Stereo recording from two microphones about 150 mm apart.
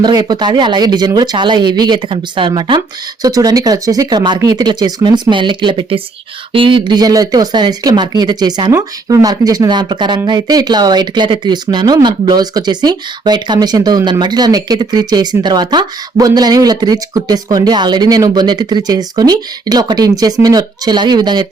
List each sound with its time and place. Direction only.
0.0 s speech: 30° right (ahead or behind)